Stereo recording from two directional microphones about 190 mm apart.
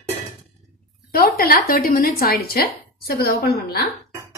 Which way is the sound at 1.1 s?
50° left (ahead or behind).